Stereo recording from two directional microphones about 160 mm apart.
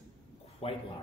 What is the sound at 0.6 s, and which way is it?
Speech, 35° left (ahead or behind).